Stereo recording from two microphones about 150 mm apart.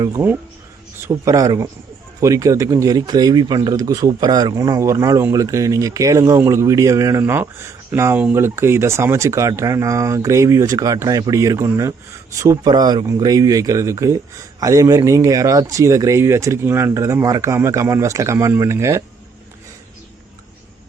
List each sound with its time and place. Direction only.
0.0 s speech: 20° right (ahead or behind)